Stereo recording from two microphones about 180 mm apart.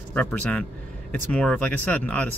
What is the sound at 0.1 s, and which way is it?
Speech, 5° left (ahead or behind).